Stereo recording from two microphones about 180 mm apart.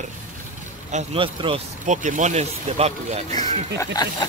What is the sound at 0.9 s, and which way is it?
Speech, 30° right (ahead or behind).